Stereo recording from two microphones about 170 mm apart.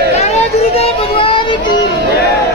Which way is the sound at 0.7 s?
35° left (ahead or behind).